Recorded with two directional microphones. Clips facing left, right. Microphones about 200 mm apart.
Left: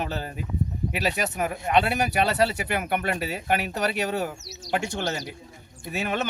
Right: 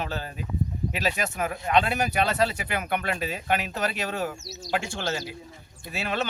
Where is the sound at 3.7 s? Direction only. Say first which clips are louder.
Left 3 dB; 15° left (ahead or behind).